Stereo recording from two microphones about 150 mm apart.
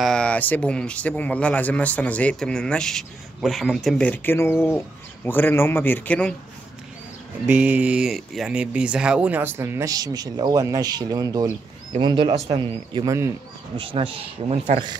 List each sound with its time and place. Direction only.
0.0 s speech: 5° left (ahead or behind)
7.4 s speech: 10° right (ahead or behind); by 14.6 s 35° right (ahead or behind)